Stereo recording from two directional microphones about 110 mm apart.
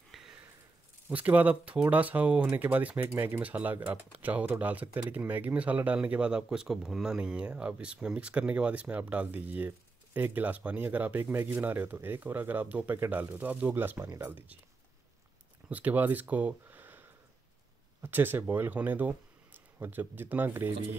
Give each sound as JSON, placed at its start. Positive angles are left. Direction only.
{"t": 0.1, "sound": "a sound", "side_deg": -5}
{"t": 1.0, "sound": "speech", "side_deg": -15}
{"t": 15.7, "sound": "speech", "side_deg": -15}
{"t": 18.0, "sound": "speech", "side_deg": -20}